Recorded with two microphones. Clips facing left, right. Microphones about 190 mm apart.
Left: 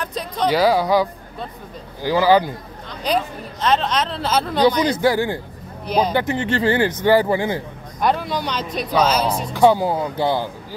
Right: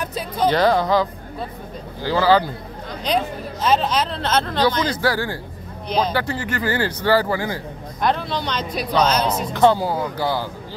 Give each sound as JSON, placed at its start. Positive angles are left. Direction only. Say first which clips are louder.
{"t": 0.0, "sound": "a sound", "louder": "right 1 dB", "side_deg": -5}
{"t": 0.5, "sound": "speech", "louder": "left 1 dB", "side_deg": 10}
{"t": 3.6, "sound": "speech", "louder": "even", "side_deg": -5}
{"t": 8.0, "sound": "speech", "louder": "left 1 dB", "side_deg": 10}
{"t": 9.6, "sound": "speech", "louder": "left 2 dB", "side_deg": 15}